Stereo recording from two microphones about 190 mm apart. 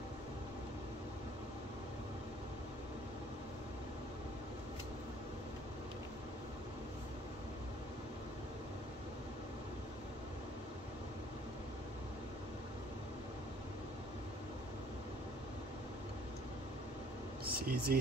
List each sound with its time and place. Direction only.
17.5 s speech: 50° right (ahead or behind)